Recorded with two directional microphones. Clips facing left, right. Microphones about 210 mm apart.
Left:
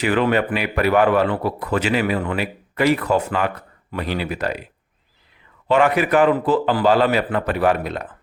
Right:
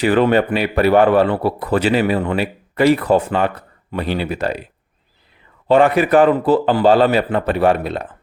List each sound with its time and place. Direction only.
0.0 s a man's voice: 35° right (ahead or behind)
5.6 s a man's voice: 30° right (ahead or behind)